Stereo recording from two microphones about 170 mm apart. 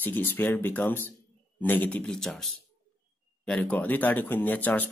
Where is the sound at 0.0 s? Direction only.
10° left (ahead or behind).